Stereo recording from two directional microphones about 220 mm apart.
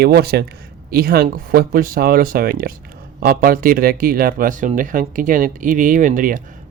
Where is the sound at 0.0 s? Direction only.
45° right (ahead or behind).